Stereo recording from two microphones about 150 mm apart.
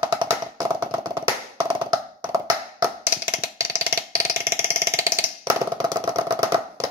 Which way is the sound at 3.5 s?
20° right (ahead or behind).